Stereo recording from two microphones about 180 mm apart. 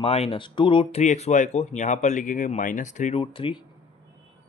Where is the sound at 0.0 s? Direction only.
35° left (ahead or behind).